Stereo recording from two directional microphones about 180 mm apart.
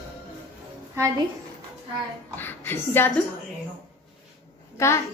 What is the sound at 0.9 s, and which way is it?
Speech, 20° right (ahead or behind).